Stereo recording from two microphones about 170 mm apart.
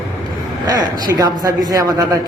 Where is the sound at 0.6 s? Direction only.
20° right (ahead or behind).